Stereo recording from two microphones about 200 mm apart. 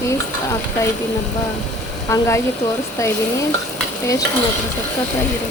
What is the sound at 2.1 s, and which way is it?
Frying, 15° left (ahead or behind).